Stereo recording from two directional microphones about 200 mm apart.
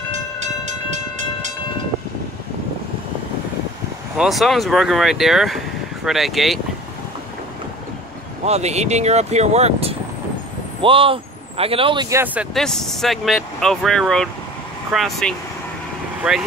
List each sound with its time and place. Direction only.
0.4 s train: 35° right (ahead or behind)
4.2 s speech: centre (ahead or behind)
8.5 s speech: 35° right (ahead or behind)
12.5 s speech: centre (ahead or behind)